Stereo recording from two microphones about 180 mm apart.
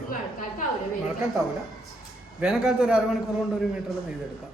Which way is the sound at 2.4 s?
5° right (ahead or behind).